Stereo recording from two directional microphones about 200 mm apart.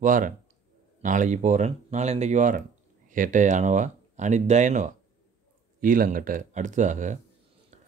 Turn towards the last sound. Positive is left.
turn(degrees=-40)  # may be behind; listen again after turning